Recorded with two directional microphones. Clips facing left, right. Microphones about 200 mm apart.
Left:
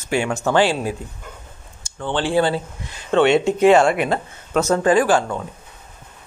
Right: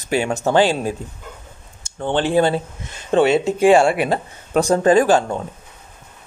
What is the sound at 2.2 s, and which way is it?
Speech, 20° right (ahead or behind).